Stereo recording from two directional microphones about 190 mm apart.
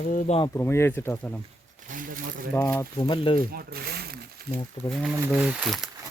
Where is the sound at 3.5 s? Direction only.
55° right (ahead or behind).